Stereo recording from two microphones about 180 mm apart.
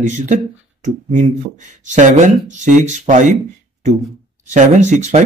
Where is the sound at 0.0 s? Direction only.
40° right (ahead or behind).